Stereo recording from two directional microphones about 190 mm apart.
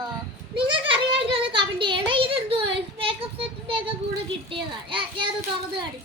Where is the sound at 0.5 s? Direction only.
25° right (ahead or behind).